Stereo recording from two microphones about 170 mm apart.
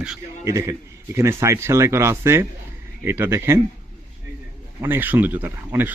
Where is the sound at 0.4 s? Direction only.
15° right (ahead or behind).